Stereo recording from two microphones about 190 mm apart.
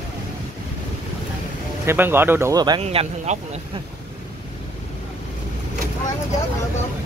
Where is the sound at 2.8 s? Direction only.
35° right (ahead or behind).